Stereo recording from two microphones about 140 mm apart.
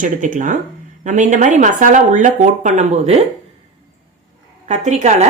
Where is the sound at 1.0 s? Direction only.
60° right (ahead or behind).